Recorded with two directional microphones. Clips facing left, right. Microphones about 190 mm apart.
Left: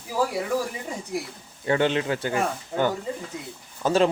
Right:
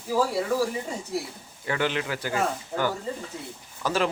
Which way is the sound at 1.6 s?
25° left (ahead or behind).